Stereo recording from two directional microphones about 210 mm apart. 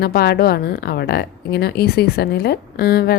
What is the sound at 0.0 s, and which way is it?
Speech, 50° left (ahead or behind).